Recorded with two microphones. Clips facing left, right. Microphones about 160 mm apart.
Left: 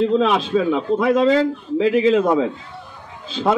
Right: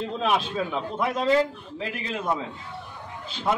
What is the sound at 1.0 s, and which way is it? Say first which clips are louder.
A man's voice: left 6 dB; 90° left.